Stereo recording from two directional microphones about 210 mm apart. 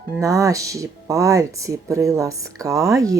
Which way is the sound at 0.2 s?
15° right (ahead or behind).